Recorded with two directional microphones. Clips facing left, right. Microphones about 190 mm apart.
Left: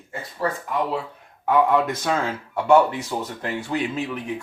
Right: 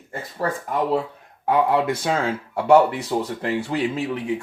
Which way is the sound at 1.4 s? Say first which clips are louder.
Even; 30° right (ahead or behind).